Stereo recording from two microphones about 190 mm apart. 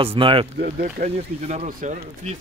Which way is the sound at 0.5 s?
45° right (ahead or behind).